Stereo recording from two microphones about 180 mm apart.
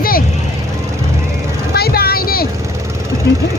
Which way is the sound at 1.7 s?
60° left (ahead or behind).